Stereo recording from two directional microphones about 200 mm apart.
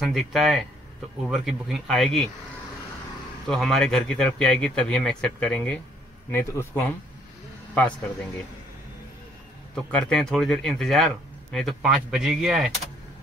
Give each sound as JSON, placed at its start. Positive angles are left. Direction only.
{"t": 0.0, "sound": "speech", "side_deg": 0}
{"t": 3.4, "sound": "speech", "side_deg": 0}
{"t": 9.8, "sound": "speech", "side_deg": 5}